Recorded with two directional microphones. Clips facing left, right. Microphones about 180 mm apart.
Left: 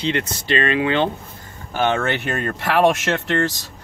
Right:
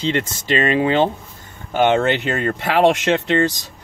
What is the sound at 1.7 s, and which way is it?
Speech, 20° right (ahead or behind).